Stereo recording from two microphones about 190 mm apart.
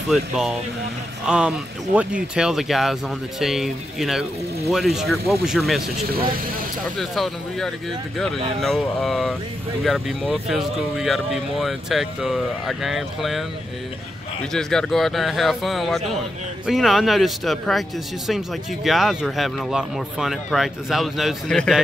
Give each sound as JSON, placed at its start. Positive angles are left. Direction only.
{"t": 0.1, "sound": "speech", "side_deg": -5}
{"t": 6.0, "sound": "speech", "side_deg": -50}
{"t": 7.0, "sound": "speech", "side_deg": 0}
{"t": 14.5, "sound": "speech", "side_deg": 5}